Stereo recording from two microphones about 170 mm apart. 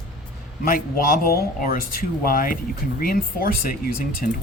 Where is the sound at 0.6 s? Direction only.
60° left (ahead or behind).